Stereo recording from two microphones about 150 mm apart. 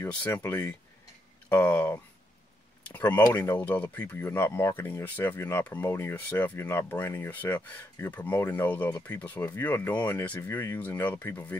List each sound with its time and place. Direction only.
0.0 s speech: 15° left (ahead or behind)
3.3 s speech: 20° left (ahead or behind)
3.5 s speech: 10° left (ahead or behind)